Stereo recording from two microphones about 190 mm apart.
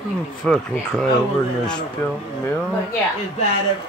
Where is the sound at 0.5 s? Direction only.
5° left (ahead or behind).